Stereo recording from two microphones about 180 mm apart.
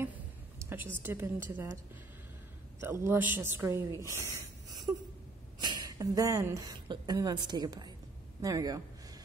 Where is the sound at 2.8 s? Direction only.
10° right (ahead or behind).